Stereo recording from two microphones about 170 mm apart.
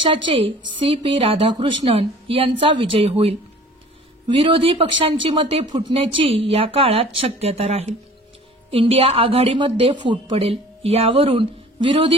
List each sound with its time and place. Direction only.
0.0 s a woman's voice: 30° right (ahead or behind)